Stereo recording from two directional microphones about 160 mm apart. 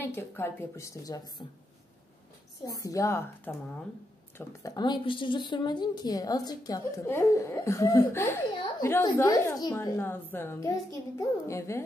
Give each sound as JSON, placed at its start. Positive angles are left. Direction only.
{"t": 0.0, "sound": "a woman's voice", "side_deg": 15}
{"t": 2.6, "sound": "speech", "side_deg": 20}